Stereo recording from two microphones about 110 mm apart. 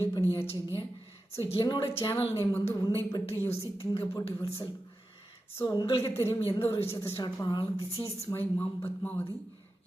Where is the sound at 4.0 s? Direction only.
25° left (ahead or behind).